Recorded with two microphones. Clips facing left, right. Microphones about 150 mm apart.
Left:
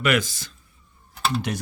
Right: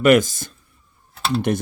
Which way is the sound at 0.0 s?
45° right (ahead or behind).